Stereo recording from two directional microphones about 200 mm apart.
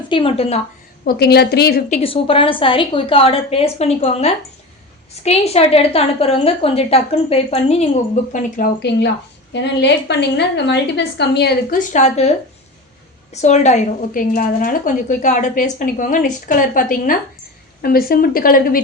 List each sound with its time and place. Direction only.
0.1 s a woman's voice: 25° left (ahead or behind)
1.0 s a woman's voice: 50° left (ahead or behind)
1.9 s a woman's voice: 30° left (ahead or behind)
13.3 s a woman's voice: 35° left (ahead or behind)